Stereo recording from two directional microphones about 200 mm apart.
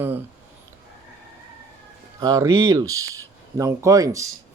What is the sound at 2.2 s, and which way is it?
Speech, 20° right (ahead or behind).